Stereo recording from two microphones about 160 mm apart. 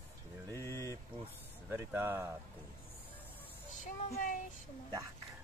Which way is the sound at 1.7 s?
15° right (ahead or behind).